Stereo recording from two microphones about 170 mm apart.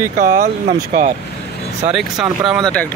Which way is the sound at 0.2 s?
50° right (ahead or behind).